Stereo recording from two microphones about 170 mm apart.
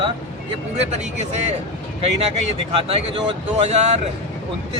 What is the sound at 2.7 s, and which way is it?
Speech, 35° right (ahead or behind).